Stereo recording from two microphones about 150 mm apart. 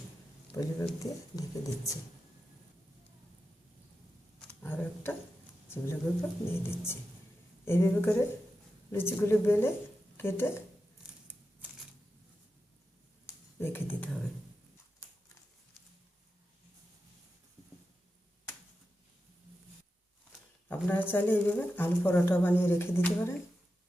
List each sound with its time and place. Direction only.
0.5 s speech: 20° left (ahead or behind)
4.4 s a sound: 10° left (ahead or behind)
5.6 s speech: 15° left (ahead or behind)
13.6 s speech: 15° left (ahead or behind)
20.7 s speech: 10° left (ahead or behind)